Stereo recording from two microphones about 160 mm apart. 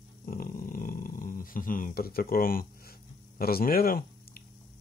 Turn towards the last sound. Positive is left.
turn(degrees=65)  # may be behind; listen again after turning